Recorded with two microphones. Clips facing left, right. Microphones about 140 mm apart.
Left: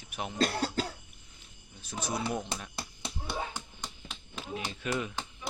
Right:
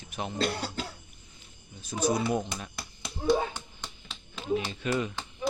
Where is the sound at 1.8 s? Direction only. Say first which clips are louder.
Right 7 dB; centre (ahead or behind).